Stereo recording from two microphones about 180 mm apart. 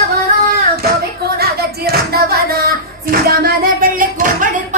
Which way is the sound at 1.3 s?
60° right (ahead or behind).